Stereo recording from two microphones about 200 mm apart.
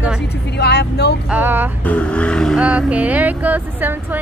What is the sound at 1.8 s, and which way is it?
Speech, 5° left (ahead or behind).